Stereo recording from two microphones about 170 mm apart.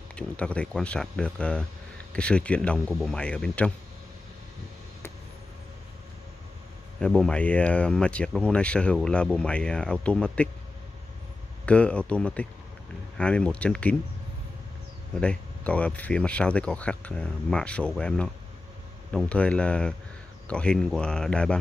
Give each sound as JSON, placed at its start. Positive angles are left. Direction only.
{"t": 0.1, "sound": "speech", "side_deg": 5}
{"t": 7.0, "sound": "speech", "side_deg": 5}
{"t": 11.6, "sound": "speech", "side_deg": 5}
{"t": 15.1, "sound": "speech", "side_deg": 5}